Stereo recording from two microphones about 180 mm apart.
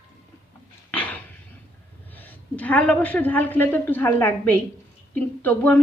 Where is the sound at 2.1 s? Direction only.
10° left (ahead or behind).